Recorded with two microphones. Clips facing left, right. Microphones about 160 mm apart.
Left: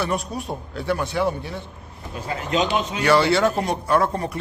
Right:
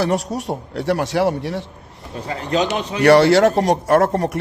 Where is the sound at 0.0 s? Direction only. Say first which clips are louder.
Right 5 dB; 90° right.